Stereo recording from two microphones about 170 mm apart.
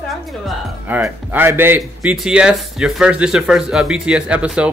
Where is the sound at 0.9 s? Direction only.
10° right (ahead or behind).